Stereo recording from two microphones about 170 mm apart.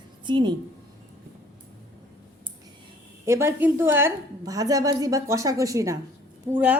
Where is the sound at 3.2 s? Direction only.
15° right (ahead or behind).